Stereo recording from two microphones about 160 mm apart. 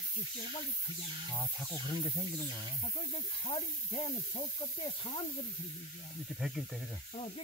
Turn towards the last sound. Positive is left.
turn(degrees=0)  # may be behind; listen again after turning